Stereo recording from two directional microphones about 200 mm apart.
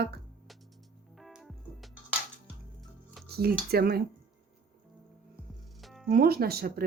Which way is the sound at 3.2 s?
50° right (ahead or behind).